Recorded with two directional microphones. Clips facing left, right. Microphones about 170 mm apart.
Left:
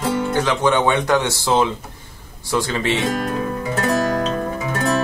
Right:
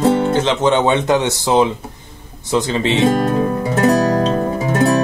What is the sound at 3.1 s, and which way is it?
Music, 35° right (ahead or behind).